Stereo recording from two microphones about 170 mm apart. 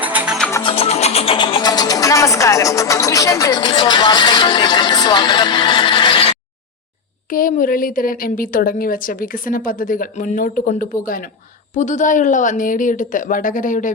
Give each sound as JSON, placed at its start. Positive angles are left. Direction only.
{"t": 0.0, "sound": "music", "side_deg": -10}
{"t": 0.6, "sound": "music", "side_deg": 35}
{"t": 7.3, "sound": "a woman's voice", "side_deg": 55}